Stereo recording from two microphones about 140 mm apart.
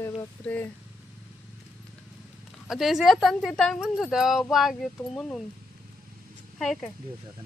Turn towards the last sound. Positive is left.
turn(degrees=0)  # may be behind; listen again after turning